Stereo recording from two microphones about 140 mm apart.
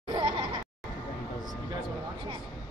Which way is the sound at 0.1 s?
35° right (ahead or behind).